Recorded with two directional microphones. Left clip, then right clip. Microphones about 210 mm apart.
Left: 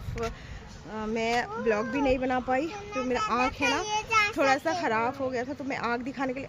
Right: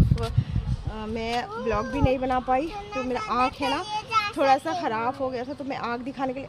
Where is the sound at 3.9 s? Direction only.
20° left (ahead or behind).